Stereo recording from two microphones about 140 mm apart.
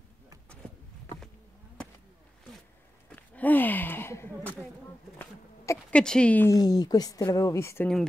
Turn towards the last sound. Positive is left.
turn(degrees=20)  # may be behind; listen again after turning